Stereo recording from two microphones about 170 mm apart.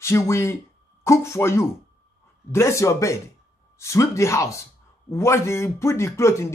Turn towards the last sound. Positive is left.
turn(degrees=15)  # may be behind; listen again after turning